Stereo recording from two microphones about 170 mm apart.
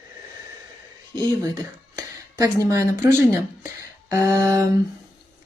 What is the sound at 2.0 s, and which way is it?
Speech, 20° right (ahead or behind).